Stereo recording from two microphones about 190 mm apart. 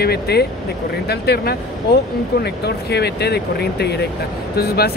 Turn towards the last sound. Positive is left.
turn(degrees=55)  # may be behind; listen again after turning